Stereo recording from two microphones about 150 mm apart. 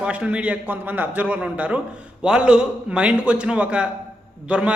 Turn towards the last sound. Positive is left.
turn(degrees=-5)  # may be behind; listen again after turning